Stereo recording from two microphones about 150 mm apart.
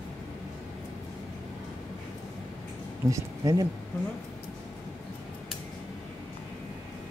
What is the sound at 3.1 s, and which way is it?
Speech, 25° right (ahead or behind).